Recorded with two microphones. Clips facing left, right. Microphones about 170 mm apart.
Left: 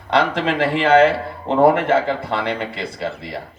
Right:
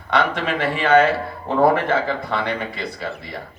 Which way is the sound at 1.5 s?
25° left (ahead or behind).